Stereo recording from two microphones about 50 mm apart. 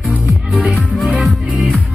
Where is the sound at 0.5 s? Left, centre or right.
Centre.